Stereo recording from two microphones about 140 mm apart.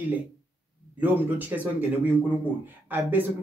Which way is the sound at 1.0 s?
10° right (ahead or behind).